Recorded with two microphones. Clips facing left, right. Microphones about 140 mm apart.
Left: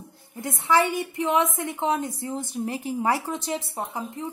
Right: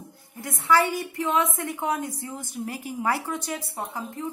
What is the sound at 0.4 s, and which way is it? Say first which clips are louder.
A woman's voice: even; 25° left (ahead or behind).